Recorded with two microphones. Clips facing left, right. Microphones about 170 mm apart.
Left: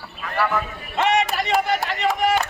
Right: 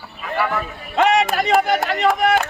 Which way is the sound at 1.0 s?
55° right (ahead or behind).